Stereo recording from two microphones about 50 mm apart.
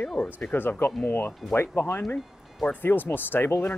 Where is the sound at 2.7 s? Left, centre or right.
Left.